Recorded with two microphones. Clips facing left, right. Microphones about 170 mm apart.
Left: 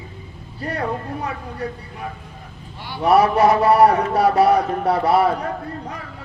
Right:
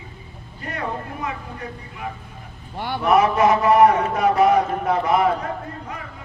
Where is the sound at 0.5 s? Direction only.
35° left (ahead or behind).